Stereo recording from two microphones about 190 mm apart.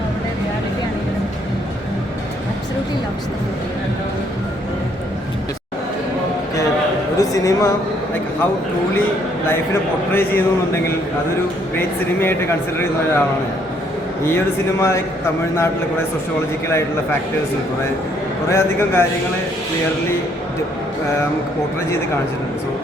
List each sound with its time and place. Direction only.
7.2 s a sound: 15° left (ahead or behind)
10.1 s speech: 10° left (ahead or behind)
11.8 s speech: 10° left (ahead or behind)
14.3 s speech: 15° left (ahead or behind)
16.6 s speech: 15° left (ahead or behind)
18.4 s speech: 15° left (ahead or behind)